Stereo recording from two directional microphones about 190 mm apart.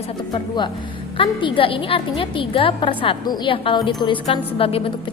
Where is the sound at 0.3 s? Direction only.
25° left (ahead or behind).